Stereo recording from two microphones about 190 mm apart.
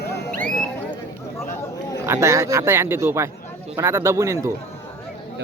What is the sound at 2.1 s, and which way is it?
Speech, 15° right (ahead or behind).